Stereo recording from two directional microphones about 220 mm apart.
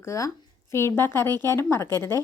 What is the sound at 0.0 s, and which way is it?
A woman's voice, 15° left (ahead or behind).